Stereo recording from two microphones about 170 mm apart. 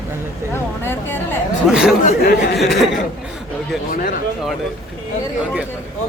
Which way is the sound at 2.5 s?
Centre (ahead or behind).